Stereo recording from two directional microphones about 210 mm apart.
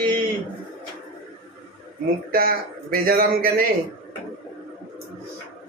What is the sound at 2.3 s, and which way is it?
A man's voice, 45° right (ahead or behind).